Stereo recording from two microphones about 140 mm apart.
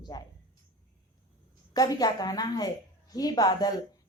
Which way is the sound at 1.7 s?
25° left (ahead or behind).